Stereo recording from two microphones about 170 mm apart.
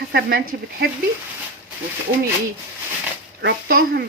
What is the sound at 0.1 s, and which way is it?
Speech, 65° right (ahead or behind).